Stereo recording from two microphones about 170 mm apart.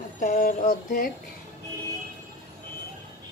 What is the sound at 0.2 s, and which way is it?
Speech, 50° left (ahead or behind).